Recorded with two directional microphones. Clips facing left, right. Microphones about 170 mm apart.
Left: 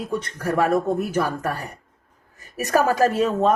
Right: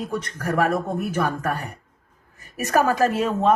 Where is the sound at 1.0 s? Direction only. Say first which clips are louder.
Left 1 dB; 35° left (ahead or behind).